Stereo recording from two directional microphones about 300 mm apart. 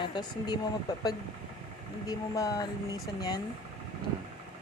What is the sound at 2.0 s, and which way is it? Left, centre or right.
Speech, centre.